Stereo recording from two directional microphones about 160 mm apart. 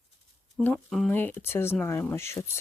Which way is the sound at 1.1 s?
10° left (ahead or behind).